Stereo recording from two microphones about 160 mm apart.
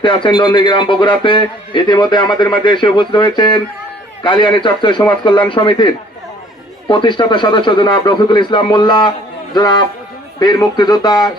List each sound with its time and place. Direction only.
0.0 s a man's voice: 30° left (ahead or behind)